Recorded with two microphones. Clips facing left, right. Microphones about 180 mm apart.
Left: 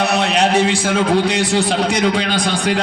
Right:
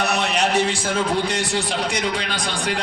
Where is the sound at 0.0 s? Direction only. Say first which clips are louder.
Left 5 dB; 65° left (ahead or behind).